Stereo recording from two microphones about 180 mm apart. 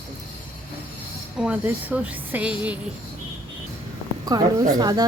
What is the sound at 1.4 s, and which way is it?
A woman's voice, 5° right (ahead or behind).